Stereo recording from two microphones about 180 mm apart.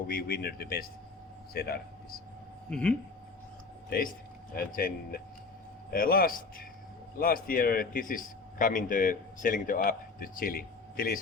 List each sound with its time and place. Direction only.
0.1 s speech: 55° left (ahead or behind)
2.6 s speech: 5° left (ahead or behind)
3.8 s a man's voice: 55° left (ahead or behind)